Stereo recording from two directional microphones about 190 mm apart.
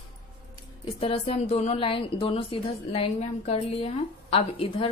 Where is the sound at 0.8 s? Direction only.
30° left (ahead or behind).